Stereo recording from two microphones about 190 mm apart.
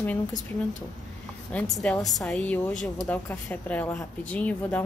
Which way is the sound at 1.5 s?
5° left (ahead or behind).